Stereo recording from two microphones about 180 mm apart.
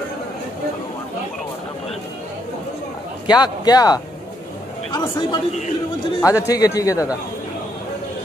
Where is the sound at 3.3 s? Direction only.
20° left (ahead or behind).